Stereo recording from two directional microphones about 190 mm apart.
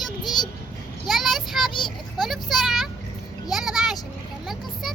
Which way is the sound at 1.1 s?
Centre (ahead or behind).